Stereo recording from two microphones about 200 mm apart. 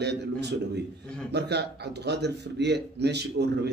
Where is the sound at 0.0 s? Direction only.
55° right (ahead or behind).